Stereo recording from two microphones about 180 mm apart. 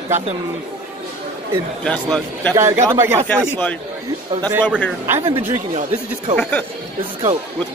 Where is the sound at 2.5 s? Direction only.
15° right (ahead or behind).